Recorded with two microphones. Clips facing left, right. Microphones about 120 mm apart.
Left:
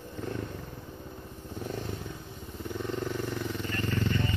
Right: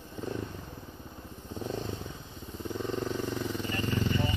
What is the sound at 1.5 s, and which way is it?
Vehicle, 20° right (ahead or behind).